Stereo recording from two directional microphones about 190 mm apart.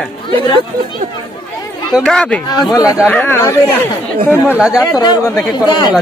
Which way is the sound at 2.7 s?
15° left (ahead or behind).